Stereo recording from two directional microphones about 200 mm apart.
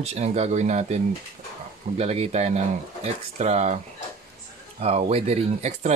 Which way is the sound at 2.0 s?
30° right (ahead or behind).